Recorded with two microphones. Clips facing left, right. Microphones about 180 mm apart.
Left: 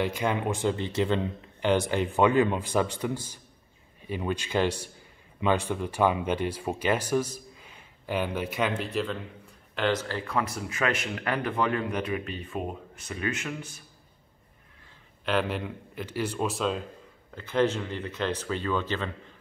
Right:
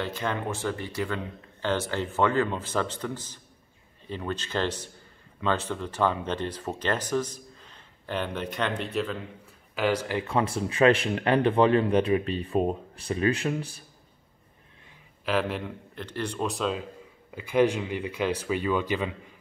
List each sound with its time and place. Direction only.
0.0 s speech: 15° left (ahead or behind); by 13.8 s 35° right (ahead or behind)
15.2 s speech: centre (ahead or behind)
17.3 s speech: 10° right (ahead or behind)